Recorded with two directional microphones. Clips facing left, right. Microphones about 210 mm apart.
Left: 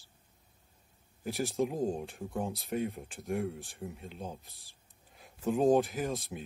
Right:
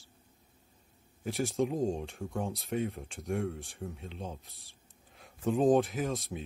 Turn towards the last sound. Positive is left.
turn(degrees=0)  # may be behind; listen again after turning